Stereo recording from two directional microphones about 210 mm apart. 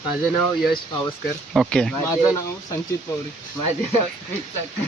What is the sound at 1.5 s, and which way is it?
Speech, centre (ahead or behind).